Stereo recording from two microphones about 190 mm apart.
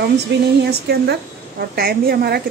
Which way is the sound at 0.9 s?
55° right (ahead or behind).